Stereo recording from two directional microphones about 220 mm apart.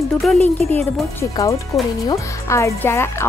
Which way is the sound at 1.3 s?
15° left (ahead or behind).